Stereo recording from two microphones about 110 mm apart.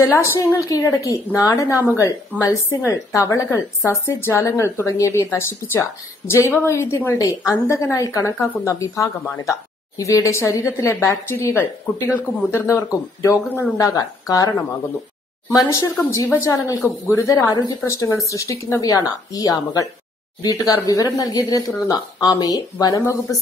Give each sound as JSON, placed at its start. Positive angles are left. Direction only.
{"t": 0.0, "sound": "a woman's voice", "side_deg": 25}
{"t": 15.5, "sound": "a woman's voice", "side_deg": 35}